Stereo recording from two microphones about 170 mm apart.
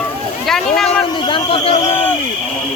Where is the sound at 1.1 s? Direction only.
25° left (ahead or behind).